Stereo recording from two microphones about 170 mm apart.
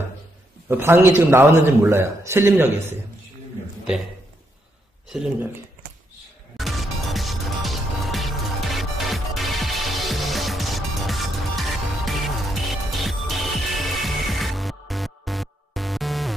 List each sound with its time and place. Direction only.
0.7 s a man's voice: 15° right (ahead or behind)
5.1 s speech: 5° right (ahead or behind)
6.5 s music: centre (ahead or behind)